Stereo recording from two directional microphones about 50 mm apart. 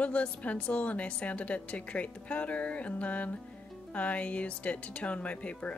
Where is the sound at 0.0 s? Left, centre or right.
Left.